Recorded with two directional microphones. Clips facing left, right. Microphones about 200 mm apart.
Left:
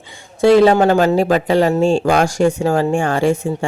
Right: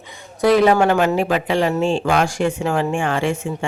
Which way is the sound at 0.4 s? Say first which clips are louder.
Left 4 dB; 30° left (ahead or behind).